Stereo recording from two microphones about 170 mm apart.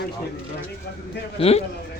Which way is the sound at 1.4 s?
35° left (ahead or behind).